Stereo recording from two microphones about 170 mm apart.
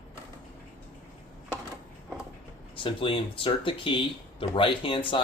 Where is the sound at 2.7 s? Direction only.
30° left (ahead or behind).